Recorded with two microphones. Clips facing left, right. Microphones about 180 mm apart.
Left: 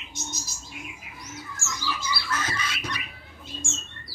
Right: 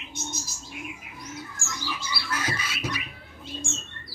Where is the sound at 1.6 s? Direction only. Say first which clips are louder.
Left 5 dB; 55° right (ahead or behind).